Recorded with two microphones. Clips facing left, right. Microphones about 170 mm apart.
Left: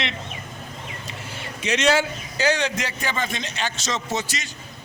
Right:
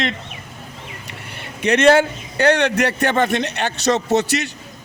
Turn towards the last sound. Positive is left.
turn(degrees=-65)  # may be behind; listen again after turning